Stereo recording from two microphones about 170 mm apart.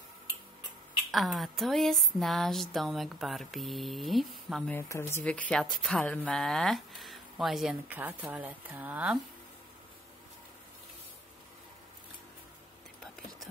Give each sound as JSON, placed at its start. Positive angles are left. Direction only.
{"t": 1.1, "sound": "speech", "side_deg": 0}
{"t": 4.7, "sound": "speech", "side_deg": 15}